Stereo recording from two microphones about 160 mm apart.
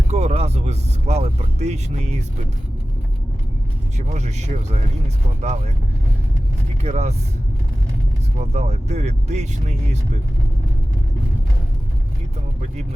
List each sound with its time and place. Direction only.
0.1 s speech: 40° right (ahead or behind)
3.9 s speech: 45° right (ahead or behind)
6.8 s speech: 45° right (ahead or behind)
8.4 s speech: 45° right (ahead or behind)